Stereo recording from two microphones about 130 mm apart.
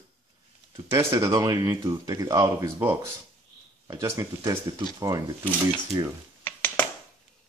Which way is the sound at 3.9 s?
25° right (ahead or behind).